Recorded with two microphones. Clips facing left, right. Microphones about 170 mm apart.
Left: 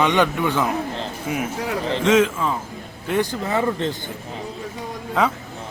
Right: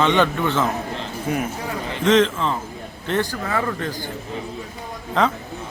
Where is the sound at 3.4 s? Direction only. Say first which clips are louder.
Left 3 dB; 20° left (ahead or behind).